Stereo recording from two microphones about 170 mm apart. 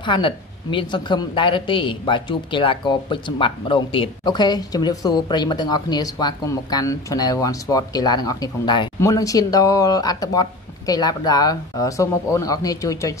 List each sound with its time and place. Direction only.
0.0 s a woman's voice: 30° left (ahead or behind)